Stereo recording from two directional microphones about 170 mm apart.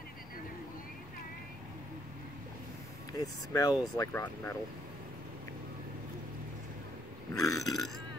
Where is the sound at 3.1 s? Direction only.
20° left (ahead or behind).